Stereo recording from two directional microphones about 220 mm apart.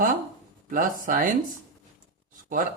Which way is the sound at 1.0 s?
40° right (ahead or behind).